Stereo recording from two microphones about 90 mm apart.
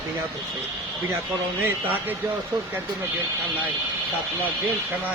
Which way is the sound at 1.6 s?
20° right (ahead or behind).